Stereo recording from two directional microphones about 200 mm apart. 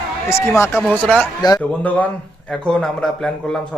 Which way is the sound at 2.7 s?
5° left (ahead or behind).